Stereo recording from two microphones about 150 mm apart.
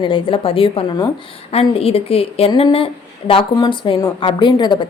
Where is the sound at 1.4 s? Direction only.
40° left (ahead or behind).